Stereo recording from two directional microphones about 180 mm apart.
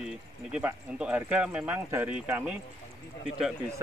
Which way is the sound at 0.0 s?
5° right (ahead or behind).